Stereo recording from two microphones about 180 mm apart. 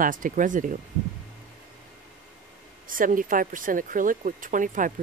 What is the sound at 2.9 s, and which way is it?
Speech, 50° right (ahead or behind).